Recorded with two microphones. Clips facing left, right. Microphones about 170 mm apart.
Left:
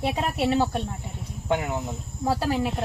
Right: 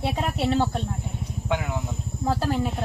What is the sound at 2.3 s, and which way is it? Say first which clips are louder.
Speech: left 1 dB; 5° left (ahead or behind).